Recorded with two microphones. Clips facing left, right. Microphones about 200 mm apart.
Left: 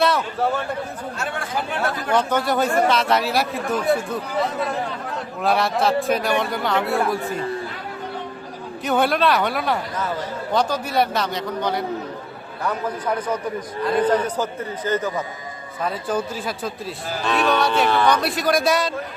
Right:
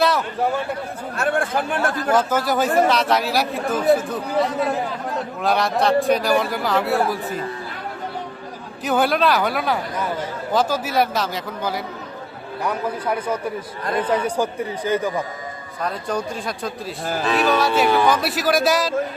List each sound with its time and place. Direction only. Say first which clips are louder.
0.0 s a sound: even; centre (ahead or behind)
0.3 s a man's voice: even; 15° right (ahead or behind)
1.1 s speech: right 8 dB; 55° right (ahead or behind)
2.0 s a man's voice: even; 5° right (ahead or behind)
8.8 s a man's voice: right 1 dB; centre (ahead or behind)
15.8 s a man's voice: left 1 dB; 5° left (ahead or behind)